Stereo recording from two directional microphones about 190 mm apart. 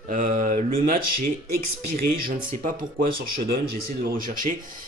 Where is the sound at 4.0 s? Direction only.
50° right (ahead or behind).